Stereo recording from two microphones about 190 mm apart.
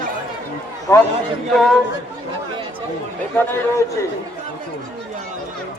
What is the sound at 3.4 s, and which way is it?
Speech, 15° left (ahead or behind).